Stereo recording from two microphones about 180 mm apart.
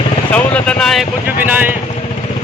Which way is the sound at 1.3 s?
10° right (ahead or behind).